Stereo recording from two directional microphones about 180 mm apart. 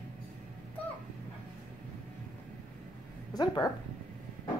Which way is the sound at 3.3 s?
20° left (ahead or behind).